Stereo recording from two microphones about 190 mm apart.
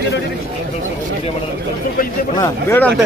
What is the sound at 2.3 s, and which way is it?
Speech, 10° left (ahead or behind).